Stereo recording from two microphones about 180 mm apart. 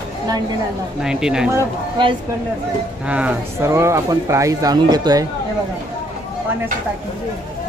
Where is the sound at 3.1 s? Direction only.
10° right (ahead or behind).